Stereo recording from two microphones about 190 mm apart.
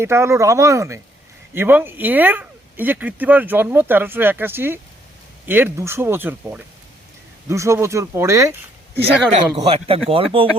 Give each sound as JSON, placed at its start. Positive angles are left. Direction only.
{"t": 0.0, "sound": "speech", "side_deg": -15}
{"t": 9.6, "sound": "speech", "side_deg": -30}